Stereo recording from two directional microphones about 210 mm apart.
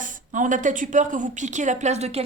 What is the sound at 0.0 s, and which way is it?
A woman's voice, 40° right (ahead or behind).